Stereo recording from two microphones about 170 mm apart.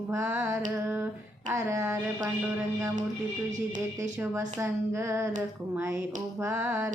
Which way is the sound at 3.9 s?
15° right (ahead or behind).